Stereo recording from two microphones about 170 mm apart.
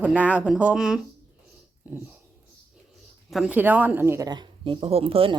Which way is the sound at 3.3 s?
5° right (ahead or behind).